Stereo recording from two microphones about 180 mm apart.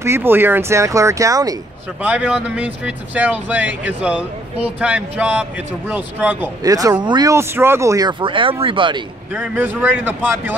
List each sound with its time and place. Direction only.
0.0 s speech: 15° right (ahead or behind)
2.0 s speech: 5° right (ahead or behind)
6.6 s speech: 20° right (ahead or behind)
9.3 s speech: 10° right (ahead or behind)